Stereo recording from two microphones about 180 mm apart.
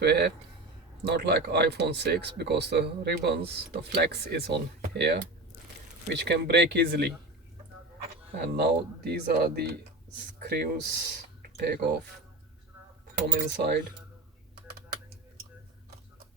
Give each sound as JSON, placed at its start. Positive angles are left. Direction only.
{"t": 0.0, "sound": "speech", "side_deg": -65}
{"t": 8.4, "sound": "speech", "side_deg": -60}
{"t": 13.1, "sound": "speech", "side_deg": -60}